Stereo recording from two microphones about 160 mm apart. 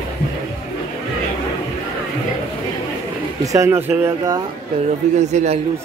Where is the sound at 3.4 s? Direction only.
20° right (ahead or behind).